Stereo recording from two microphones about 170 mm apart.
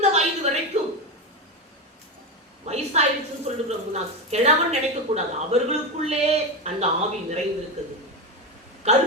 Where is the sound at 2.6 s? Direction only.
40° right (ahead or behind).